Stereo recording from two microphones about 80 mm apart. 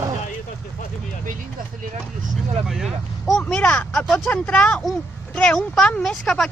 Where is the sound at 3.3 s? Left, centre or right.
Centre.